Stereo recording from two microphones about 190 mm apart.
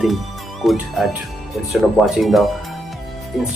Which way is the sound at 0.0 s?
Centre (ahead or behind).